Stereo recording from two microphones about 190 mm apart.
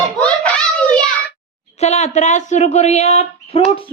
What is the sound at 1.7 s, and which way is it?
A woman's voice, 35° left (ahead or behind).